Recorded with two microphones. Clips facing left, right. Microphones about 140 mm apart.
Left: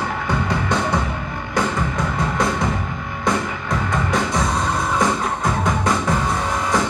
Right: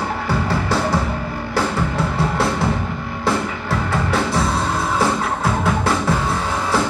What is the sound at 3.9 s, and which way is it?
Music, 30° right (ahead or behind).